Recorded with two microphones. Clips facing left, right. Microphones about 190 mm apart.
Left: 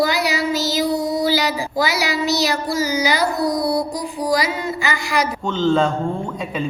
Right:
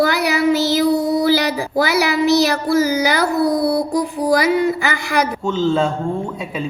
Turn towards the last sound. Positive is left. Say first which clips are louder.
# even
turn(degrees=-5)  # may be behind; listen again after turning